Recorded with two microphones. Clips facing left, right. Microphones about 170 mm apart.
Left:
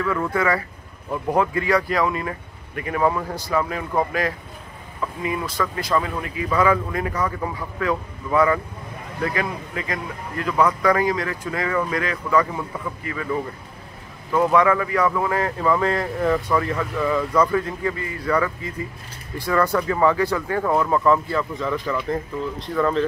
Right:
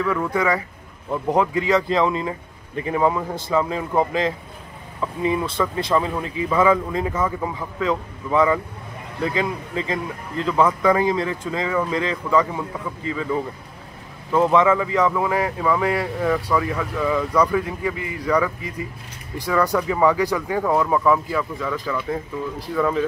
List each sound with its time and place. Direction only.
0.0 s speech: 15° right (ahead or behind)
14.4 s speech: 20° right (ahead or behind); by 23.0 s 5° right (ahead or behind)